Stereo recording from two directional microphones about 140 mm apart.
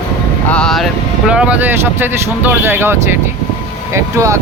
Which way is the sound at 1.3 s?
10° right (ahead or behind).